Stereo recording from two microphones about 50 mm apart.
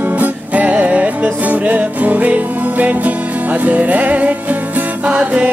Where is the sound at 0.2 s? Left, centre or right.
Right.